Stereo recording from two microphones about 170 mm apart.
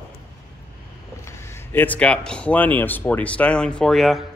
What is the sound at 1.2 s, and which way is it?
Speech, 15° left (ahead or behind).